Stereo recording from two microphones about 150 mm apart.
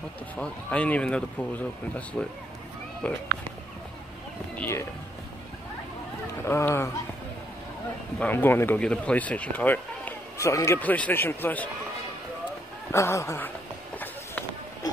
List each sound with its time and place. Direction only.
0.4 s speech: 10° left (ahead or behind)
4.6 s speech: 15° left (ahead or behind)
6.4 s speech: 15° left (ahead or behind)
8.2 s speech: 10° left (ahead or behind)
12.9 s a man's voice: 20° left (ahead or behind)